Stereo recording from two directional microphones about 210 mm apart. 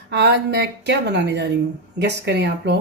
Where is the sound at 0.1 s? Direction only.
55° right (ahead or behind).